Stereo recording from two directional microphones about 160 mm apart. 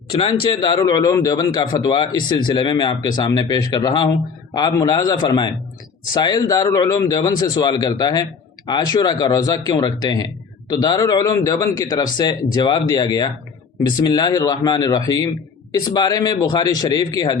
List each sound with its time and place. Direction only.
0.1 s a man's voice: 30° left (ahead or behind)